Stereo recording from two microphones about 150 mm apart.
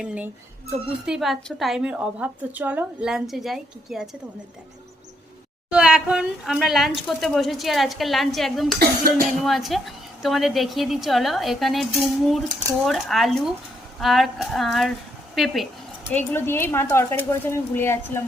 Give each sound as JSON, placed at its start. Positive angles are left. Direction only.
{"t": 0.0, "sound": "a woman's voice", "side_deg": -10}
{"t": 5.7, "sound": "a woman's voice", "side_deg": -5}
{"t": 16.0, "sound": "a woman's voice", "side_deg": 15}